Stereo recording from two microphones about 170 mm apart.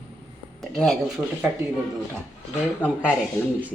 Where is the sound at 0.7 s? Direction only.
5° left (ahead or behind).